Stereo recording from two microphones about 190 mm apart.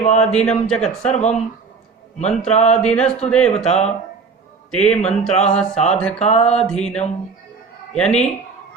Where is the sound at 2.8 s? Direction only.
5° left (ahead or behind).